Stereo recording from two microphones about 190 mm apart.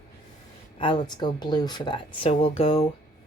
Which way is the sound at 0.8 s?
25° left (ahead or behind).